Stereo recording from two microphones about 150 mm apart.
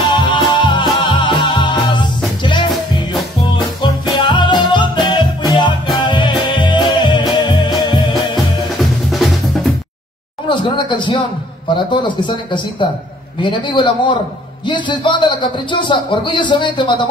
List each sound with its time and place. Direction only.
0.1 s music: 30° left (ahead or behind)
8.7 s drum: centre (ahead or behind)
10.5 s a man's voice: 30° left (ahead or behind)